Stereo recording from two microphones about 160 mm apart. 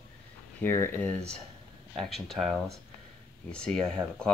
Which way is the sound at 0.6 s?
15° left (ahead or behind).